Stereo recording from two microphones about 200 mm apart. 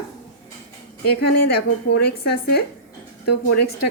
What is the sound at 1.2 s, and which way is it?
A woman's voice, 50° left (ahead or behind).